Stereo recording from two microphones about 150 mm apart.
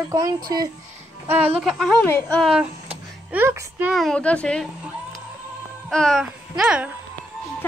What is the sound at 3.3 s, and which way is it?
Speech, 15° right (ahead or behind).